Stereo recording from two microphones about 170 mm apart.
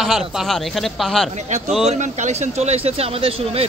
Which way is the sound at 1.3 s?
45° right (ahead or behind).